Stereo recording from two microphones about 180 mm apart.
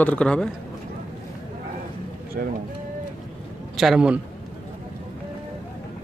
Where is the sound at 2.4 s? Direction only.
55° right (ahead or behind).